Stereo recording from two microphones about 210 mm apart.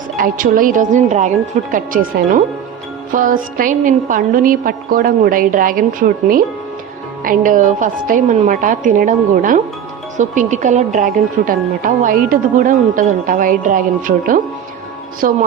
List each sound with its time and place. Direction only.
0.2 s a woman's voice: 40° right (ahead or behind)